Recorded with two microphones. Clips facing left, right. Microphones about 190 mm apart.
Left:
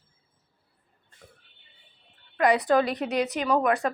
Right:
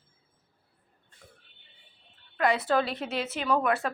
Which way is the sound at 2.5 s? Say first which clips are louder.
Left 4 dB; 15° left (ahead or behind).